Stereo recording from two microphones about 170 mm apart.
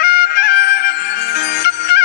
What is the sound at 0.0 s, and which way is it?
Music, 70° left (ahead or behind).